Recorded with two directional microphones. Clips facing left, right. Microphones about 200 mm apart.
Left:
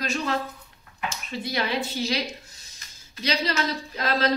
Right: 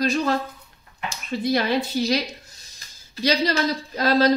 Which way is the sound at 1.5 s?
40° right (ahead or behind).